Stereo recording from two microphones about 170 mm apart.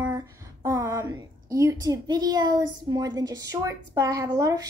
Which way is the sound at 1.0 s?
20° right (ahead or behind).